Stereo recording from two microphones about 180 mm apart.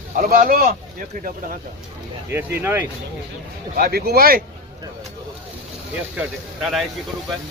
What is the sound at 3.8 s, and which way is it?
Speech, 60° right (ahead or behind).